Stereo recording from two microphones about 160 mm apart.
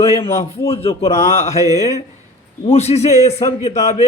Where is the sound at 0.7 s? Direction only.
40° left (ahead or behind).